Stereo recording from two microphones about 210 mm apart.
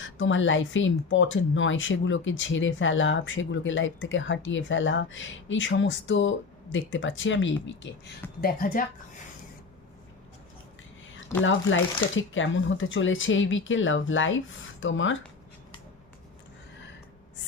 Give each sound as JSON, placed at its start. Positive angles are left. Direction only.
{"t": 0.0, "sound": "speech", "side_deg": 65}
{"t": 8.4, "sound": "speech", "side_deg": 45}
{"t": 11.1, "sound": "speech", "side_deg": 65}